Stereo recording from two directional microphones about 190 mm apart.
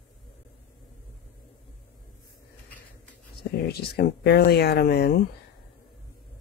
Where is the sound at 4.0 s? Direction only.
55° left (ahead or behind).